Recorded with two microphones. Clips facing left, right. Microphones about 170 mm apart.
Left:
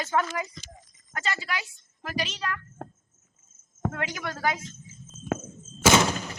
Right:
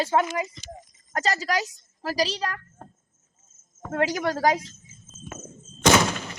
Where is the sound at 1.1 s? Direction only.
40° right (ahead or behind).